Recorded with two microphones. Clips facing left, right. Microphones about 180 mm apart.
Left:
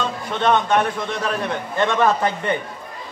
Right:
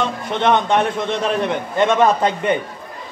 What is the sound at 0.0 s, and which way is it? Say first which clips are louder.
A man's voice: right 2 dB; 20° right (ahead or behind).